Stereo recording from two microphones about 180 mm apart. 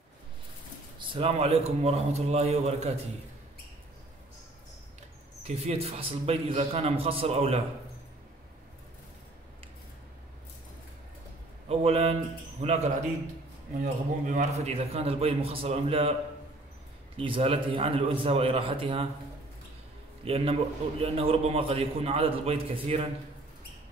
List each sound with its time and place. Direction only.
0.9 s a man's voice: 30° right (ahead or behind)
5.4 s a man's voice: 35° right (ahead or behind)
11.7 s a man's voice: 35° right (ahead or behind)
17.2 s a man's voice: 30° right (ahead or behind)
20.2 s a man's voice: 35° right (ahead or behind)